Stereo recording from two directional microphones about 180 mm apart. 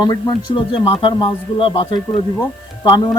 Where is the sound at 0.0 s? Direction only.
25° left (ahead or behind).